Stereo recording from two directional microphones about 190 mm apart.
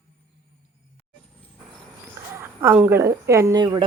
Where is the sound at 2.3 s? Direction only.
10° right (ahead or behind).